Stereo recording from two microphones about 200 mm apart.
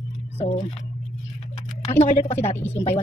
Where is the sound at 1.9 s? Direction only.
40° left (ahead or behind).